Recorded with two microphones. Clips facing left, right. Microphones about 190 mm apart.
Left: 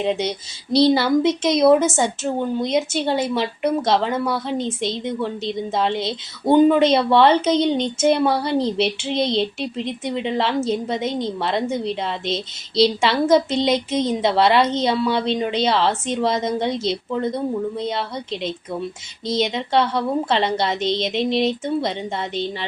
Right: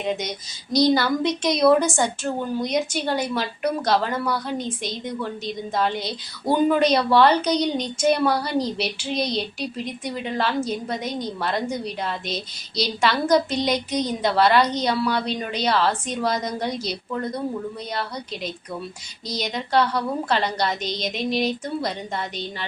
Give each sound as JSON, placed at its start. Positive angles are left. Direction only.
{"t": 0.0, "sound": "a woman's voice", "side_deg": 30}